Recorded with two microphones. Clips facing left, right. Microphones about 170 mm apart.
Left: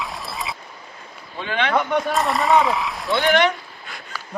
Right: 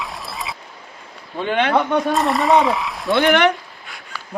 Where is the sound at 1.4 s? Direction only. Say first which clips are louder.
Right 5 dB; 45° right (ahead or behind).